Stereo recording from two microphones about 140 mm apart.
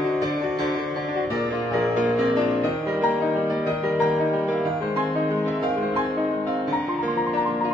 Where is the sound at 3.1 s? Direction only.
Centre (ahead or behind).